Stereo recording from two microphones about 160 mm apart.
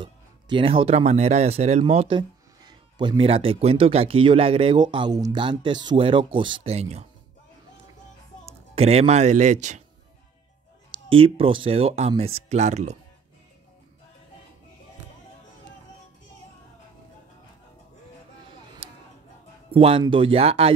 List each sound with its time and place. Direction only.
0.0 s speech: 30° right (ahead or behind)
8.5 s speech: 40° right (ahead or behind)
11.1 s speech: 35° right (ahead or behind)
19.7 s speech: 35° right (ahead or behind)